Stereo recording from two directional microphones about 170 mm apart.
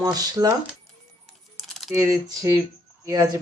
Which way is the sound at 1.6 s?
Centre (ahead or behind).